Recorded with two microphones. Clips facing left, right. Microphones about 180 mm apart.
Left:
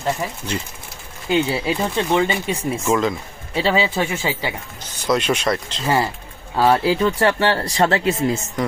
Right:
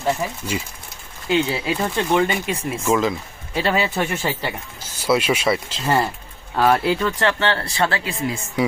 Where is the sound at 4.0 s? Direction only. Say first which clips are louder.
Left 1 dB; 15° left (ahead or behind).